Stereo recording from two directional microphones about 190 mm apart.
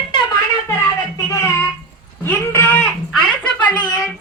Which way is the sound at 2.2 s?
10° left (ahead or behind).